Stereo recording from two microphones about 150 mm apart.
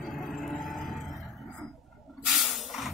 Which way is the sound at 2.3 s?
Centre (ahead or behind).